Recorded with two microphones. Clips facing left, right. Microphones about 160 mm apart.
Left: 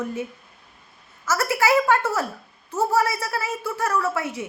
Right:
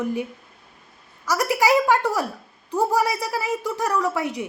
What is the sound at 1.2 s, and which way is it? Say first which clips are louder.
A woman's voice: right 1 dB; 15° right (ahead or behind).